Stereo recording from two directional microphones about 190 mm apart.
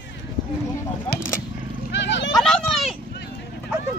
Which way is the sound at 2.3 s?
Centre (ahead or behind).